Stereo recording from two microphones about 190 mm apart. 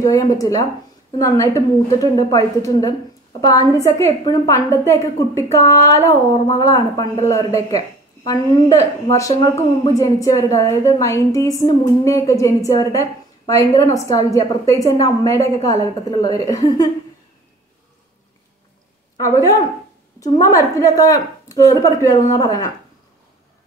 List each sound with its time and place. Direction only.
0.0 s a woman's voice: 20° left (ahead or behind)
19.1 s a woman's voice: 15° left (ahead or behind)